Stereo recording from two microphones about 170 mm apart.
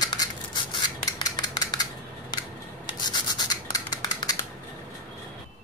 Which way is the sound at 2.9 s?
25° left (ahead or behind).